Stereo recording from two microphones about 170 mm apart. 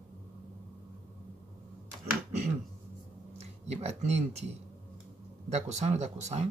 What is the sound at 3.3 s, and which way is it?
Speech, 40° right (ahead or behind).